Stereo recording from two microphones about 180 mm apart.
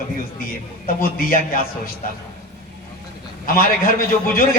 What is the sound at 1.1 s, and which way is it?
Speech, 55° left (ahead or behind).